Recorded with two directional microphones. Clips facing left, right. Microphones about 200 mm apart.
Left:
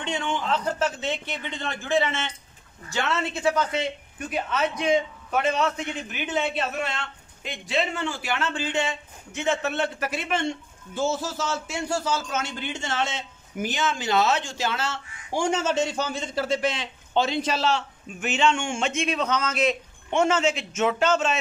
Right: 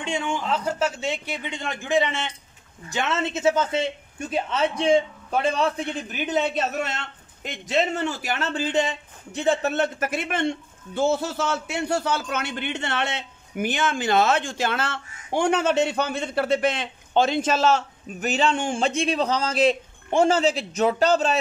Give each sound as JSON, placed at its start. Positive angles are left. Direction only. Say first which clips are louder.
{"t": 0.0, "sound": "a woman's voice", "louder": "right 1 dB", "side_deg": -10}